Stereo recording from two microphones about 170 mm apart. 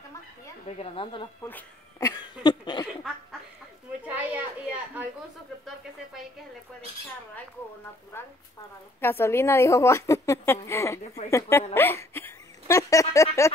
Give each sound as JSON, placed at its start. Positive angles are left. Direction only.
{"t": 0.7, "sound": "a woman's voice", "side_deg": 35}
{"t": 1.4, "sound": "speech", "side_deg": 15}
{"t": 4.1, "sound": "a woman's voice", "side_deg": -10}
{"t": 9.0, "sound": "a woman's voice", "side_deg": 15}